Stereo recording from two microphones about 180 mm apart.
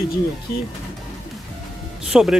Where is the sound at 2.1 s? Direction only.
5° right (ahead or behind).